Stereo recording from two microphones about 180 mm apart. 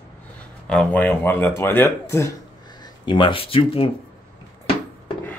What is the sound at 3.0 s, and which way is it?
Speech, 25° left (ahead or behind).